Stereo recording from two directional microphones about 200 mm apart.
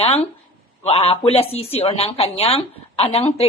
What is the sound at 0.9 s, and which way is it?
A woman's voice, 30° left (ahead or behind).